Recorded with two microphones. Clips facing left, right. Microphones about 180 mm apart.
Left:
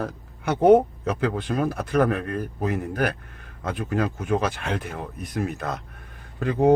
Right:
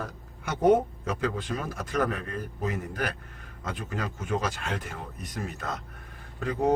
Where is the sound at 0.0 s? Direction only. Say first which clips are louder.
Left 8 dB; 60° left (ahead or behind).